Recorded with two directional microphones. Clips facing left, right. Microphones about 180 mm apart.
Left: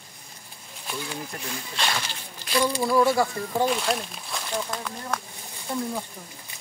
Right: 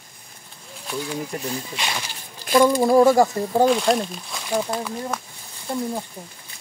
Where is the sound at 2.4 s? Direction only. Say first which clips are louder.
Right 8 dB; 50° right (ahead or behind).